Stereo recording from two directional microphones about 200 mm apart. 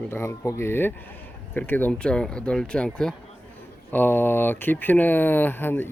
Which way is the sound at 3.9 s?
10° left (ahead or behind).